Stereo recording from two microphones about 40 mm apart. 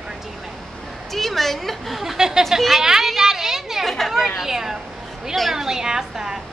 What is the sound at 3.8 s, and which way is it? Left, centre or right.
A woman's voice, centre.